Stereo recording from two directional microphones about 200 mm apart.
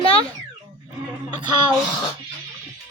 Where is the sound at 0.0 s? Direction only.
25° left (ahead or behind).